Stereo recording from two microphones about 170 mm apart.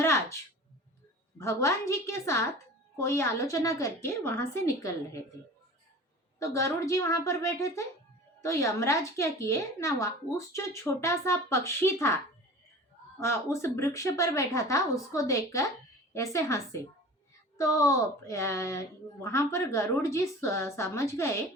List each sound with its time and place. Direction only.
0.0 s a sound: 15° left (ahead or behind)
1.4 s a woman's voice: 15° left (ahead or behind)
6.4 s a woman's voice: 20° left (ahead or behind)
17.6 s a woman's voice: 20° left (ahead or behind)